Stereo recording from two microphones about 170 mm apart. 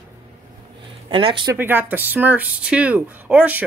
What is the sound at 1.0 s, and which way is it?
Speech, 30° right (ahead or behind).